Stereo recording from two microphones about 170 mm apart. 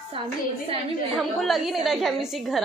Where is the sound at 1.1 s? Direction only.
Centre (ahead or behind).